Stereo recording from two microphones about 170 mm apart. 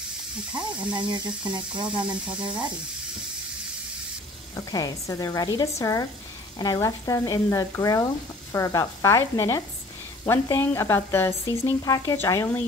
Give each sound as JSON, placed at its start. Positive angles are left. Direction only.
{"t": 0.9, "sound": "speech", "side_deg": -25}
{"t": 4.6, "sound": "speech", "side_deg": 20}